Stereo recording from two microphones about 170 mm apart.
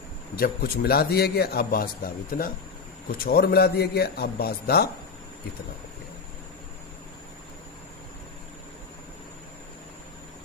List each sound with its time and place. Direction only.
0.3 s a man's voice: 60° left (ahead or behind)